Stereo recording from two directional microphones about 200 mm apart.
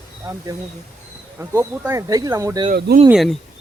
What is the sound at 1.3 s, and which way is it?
Speech, 10° right (ahead or behind).